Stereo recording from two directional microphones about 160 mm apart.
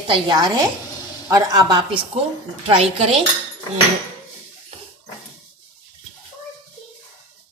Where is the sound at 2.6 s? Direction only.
40° right (ahead or behind).